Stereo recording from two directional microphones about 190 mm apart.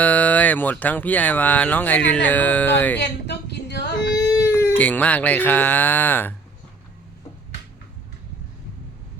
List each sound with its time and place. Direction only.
0.0 s speech: 10° left (ahead or behind)
3.0 s a woman's voice: 65° left (ahead or behind)
4.1 s speech: 20° left (ahead or behind)